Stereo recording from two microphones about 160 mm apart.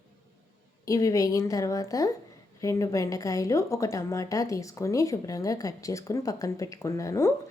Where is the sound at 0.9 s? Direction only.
20° left (ahead or behind).